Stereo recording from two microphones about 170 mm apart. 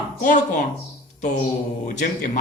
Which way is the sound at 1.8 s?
45° left (ahead or behind).